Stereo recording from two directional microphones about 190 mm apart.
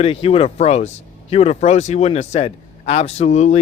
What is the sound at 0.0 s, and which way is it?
Speech, 30° left (ahead or behind).